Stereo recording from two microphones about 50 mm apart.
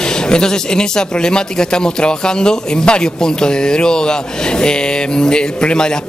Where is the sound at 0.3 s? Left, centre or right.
Centre.